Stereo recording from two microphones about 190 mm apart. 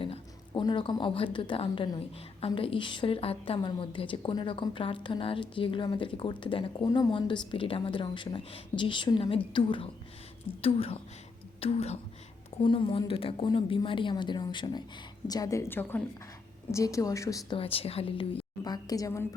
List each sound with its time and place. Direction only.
0.0 s a woman's voice: 25° left (ahead or behind)
17.6 s a woman's voice: 30° left (ahead or behind)